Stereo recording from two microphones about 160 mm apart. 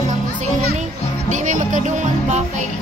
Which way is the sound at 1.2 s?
50° right (ahead or behind).